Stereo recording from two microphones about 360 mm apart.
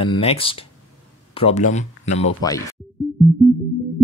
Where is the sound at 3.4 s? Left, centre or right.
Centre.